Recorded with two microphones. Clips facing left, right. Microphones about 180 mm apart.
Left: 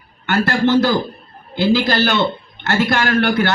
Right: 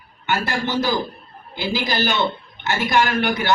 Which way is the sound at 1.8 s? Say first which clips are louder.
Left 4 dB; 60° left (ahead or behind).